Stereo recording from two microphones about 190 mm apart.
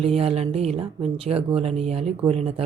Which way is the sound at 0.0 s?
30° right (ahead or behind).